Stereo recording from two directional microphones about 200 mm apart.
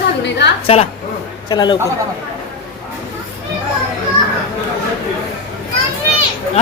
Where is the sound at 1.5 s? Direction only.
20° left (ahead or behind).